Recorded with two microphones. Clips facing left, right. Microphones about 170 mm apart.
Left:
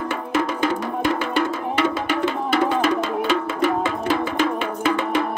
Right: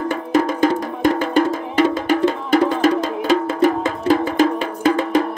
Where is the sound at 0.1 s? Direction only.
40° right (ahead or behind).